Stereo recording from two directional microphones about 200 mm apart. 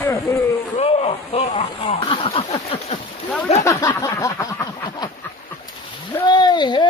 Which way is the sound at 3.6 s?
15° left (ahead or behind).